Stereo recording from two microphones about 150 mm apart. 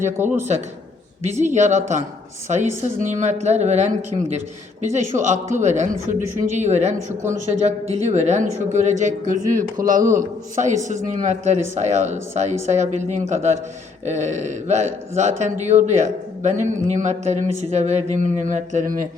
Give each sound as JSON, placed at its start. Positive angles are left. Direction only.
{"t": 0.2, "sound": "speech", "side_deg": -15}
{"t": 1.2, "sound": "a man's voice", "side_deg": -50}